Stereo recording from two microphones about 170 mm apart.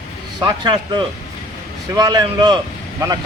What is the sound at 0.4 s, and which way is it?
Speech, 25° right (ahead or behind).